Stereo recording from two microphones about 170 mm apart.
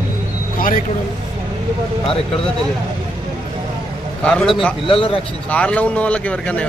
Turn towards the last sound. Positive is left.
turn(degrees=10)  # may be behind; listen again after turning